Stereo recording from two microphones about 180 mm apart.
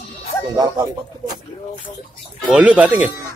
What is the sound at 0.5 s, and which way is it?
Speech, 20° right (ahead or behind).